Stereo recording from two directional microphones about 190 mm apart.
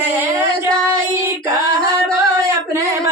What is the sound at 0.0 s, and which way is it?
Music, 10° right (ahead or behind).